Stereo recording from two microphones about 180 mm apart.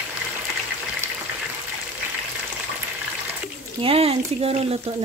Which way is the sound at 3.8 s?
30° right (ahead or behind).